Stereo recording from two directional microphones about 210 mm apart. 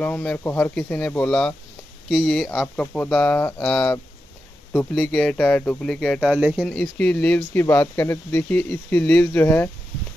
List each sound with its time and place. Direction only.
0.0 s speech: 5° left (ahead or behind)